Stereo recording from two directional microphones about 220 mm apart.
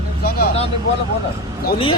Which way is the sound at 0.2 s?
45° left (ahead or behind).